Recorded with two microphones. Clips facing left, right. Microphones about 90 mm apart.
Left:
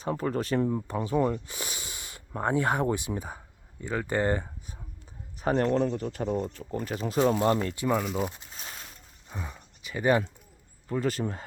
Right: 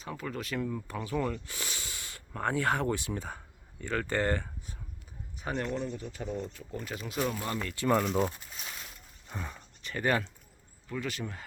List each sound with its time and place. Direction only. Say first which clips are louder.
0.0 s speech: left 9 dB; 40° left (ahead or behind); by 4.8 s 20° left (ahead or behind)
5.4 s speech: left 9 dB; 40° left (ahead or behind)
6.7 s speech: left 7 dB; 40° left (ahead or behind)
7.8 s speech: even; 5° left (ahead or behind)
9.3 s speech: left 1 dB; 10° left (ahead or behind)
10.8 s speech: left 7 dB; 35° left (ahead or behind)